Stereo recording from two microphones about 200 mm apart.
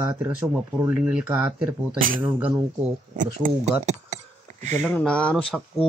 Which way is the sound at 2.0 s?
45° right (ahead or behind).